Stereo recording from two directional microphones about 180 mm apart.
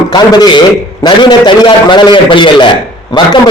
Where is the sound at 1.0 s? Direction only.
25° left (ahead or behind).